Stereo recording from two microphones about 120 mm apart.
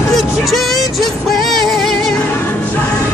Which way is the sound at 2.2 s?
15° left (ahead or behind).